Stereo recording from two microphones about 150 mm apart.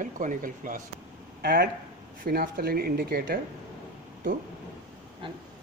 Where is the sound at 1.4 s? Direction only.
75° right (ahead or behind).